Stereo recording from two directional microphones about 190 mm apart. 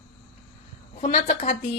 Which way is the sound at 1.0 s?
40° left (ahead or behind).